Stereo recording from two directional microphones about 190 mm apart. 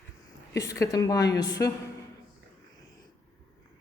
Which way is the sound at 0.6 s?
15° left (ahead or behind).